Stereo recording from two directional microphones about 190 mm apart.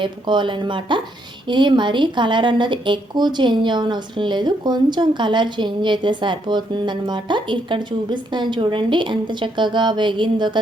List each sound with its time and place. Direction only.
0.0 s a woman's voice: 25° right (ahead or behind)